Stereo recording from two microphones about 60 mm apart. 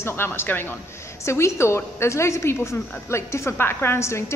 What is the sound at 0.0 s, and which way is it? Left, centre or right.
Speech, left.